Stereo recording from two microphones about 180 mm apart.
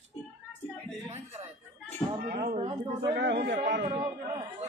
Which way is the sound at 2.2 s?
55° right (ahead or behind).